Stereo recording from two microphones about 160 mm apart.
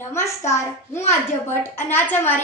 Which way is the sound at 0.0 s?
15° left (ahead or behind).